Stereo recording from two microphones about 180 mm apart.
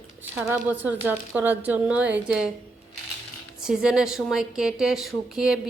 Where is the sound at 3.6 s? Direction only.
5° right (ahead or behind).